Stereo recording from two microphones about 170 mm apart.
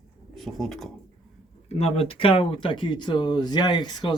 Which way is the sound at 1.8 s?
35° left (ahead or behind).